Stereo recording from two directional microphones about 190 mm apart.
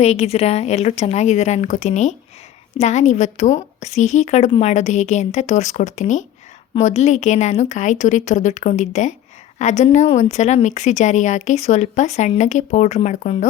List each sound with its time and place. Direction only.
0.0 s a woman's voice: 35° left (ahead or behind)